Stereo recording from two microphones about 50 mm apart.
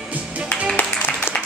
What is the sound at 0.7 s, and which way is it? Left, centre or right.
Music, left.